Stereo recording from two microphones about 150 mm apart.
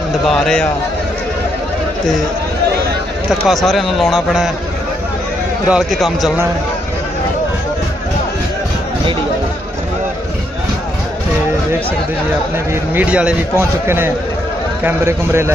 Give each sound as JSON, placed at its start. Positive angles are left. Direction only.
{"t": 0.3, "sound": "speech", "side_deg": 5}
{"t": 3.4, "sound": "speech", "side_deg": 0}
{"t": 5.6, "sound": "speech", "side_deg": -5}
{"t": 12.9, "sound": "a man's voice", "side_deg": -10}